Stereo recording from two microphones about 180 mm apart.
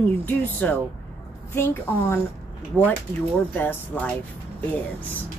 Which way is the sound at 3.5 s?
10° left (ahead or behind).